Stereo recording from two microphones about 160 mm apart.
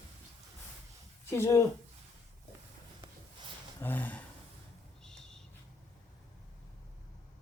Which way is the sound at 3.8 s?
10° left (ahead or behind).